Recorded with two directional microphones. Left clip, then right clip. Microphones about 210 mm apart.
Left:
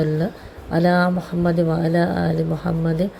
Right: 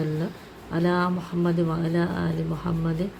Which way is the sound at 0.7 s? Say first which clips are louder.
Left 7 dB; 15° left (ahead or behind).